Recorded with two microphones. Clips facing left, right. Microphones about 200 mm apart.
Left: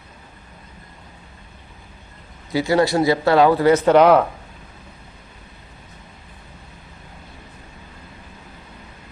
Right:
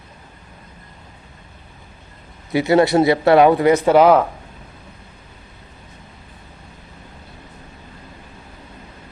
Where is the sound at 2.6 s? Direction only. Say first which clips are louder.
Right 3 dB; 20° right (ahead or behind); by 4.2 s 5° right (ahead or behind).